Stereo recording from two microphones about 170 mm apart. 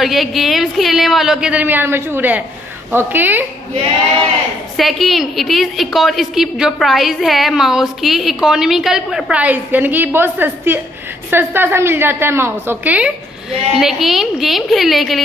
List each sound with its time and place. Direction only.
0.0 s a woman's voice: centre (ahead or behind)
4.7 s a woman's voice: centre (ahead or behind)